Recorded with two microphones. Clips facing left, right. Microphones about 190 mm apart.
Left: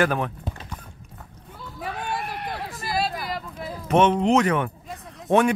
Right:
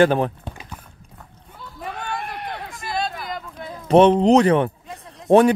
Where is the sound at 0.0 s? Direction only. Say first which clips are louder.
Right 6 dB; 30° right (ahead or behind).